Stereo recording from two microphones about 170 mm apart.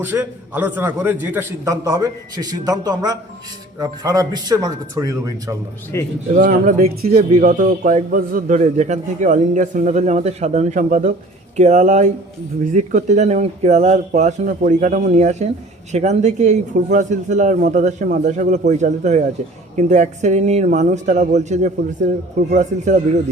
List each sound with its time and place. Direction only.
0.0 s a man's voice: 10° right (ahead or behind)
5.9 s speech: 15° left (ahead or behind)
6.3 s speech: 50° right (ahead or behind)
7.3 s a man's voice: 50° right (ahead or behind)